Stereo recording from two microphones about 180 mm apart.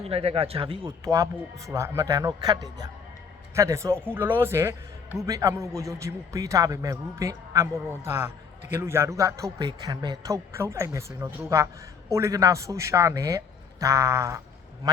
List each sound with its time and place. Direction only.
0.0 s speech: 35° right (ahead or behind); by 14.4 s 15° right (ahead or behind)